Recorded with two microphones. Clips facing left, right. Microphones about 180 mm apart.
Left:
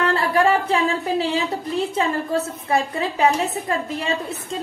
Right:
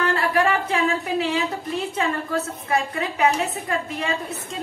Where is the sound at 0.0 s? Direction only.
30° left (ahead or behind).